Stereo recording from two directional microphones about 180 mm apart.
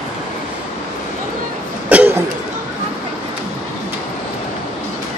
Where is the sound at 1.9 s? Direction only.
10° right (ahead or behind).